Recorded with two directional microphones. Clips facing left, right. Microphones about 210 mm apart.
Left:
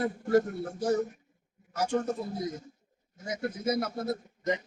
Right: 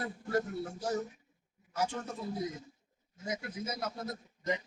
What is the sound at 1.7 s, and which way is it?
Speech, 45° left (ahead or behind).